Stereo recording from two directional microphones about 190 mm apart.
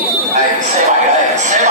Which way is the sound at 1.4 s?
40° right (ahead or behind).